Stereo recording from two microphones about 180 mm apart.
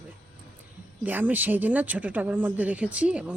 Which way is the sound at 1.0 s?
10° right (ahead or behind).